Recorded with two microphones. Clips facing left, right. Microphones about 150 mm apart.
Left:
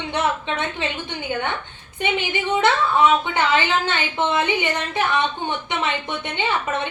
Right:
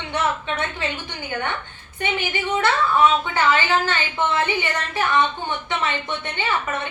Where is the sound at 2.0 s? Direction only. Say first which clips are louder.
Left 2 dB; 20° left (ahead or behind).